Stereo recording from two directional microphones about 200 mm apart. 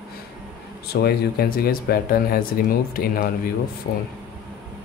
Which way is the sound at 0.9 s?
55° left (ahead or behind).